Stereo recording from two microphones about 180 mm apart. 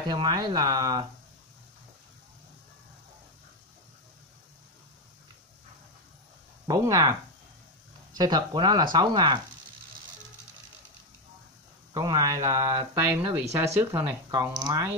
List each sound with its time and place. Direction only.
0.0 s speech: 25° right (ahead or behind)
6.7 s speech: 20° right (ahead or behind)
11.9 s speech: 20° right (ahead or behind)